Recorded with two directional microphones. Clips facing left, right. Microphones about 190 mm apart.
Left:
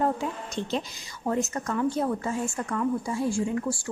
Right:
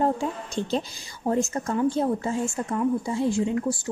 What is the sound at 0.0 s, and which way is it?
A woman's voice, 35° right (ahead or behind).